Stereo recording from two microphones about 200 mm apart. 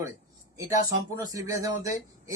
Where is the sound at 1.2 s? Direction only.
15° right (ahead or behind).